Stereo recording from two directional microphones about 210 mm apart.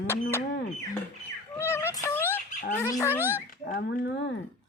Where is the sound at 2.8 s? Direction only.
15° left (ahead or behind).